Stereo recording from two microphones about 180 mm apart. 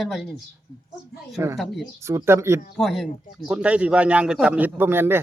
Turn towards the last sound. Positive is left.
turn(degrees=-10)  # may be behind; listen again after turning